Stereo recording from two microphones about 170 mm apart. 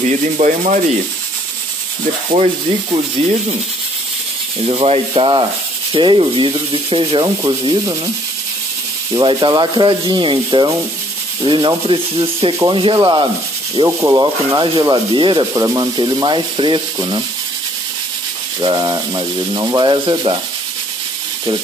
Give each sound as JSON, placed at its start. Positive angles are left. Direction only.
{"t": 0.4, "sound": "sanding", "side_deg": -45}
{"t": 3.2, "sound": "sanding", "side_deg": -35}
{"t": 4.6, "sound": "sanding", "side_deg": -35}
{"t": 5.9, "sound": "speech", "side_deg": -30}
{"t": 9.1, "sound": "speech", "side_deg": -30}
{"t": 18.6, "sound": "speech", "side_deg": -25}